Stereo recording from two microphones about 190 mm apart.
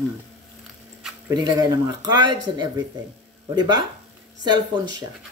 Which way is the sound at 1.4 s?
20° right (ahead or behind).